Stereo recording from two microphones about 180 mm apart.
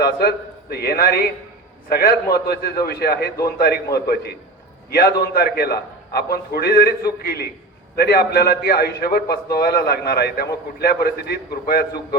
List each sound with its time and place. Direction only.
0.0 s a man's voice: 60° left (ahead or behind)